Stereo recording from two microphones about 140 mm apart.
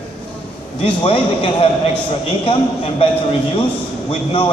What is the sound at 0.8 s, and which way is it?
A man's voice, 40° left (ahead or behind).